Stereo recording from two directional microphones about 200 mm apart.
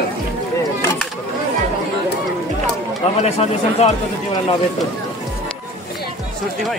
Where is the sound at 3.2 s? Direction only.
30° left (ahead or behind).